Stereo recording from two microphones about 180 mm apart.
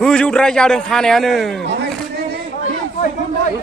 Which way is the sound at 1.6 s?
65° right (ahead or behind).